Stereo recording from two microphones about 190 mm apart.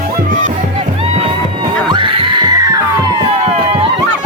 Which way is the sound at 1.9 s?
25° right (ahead or behind).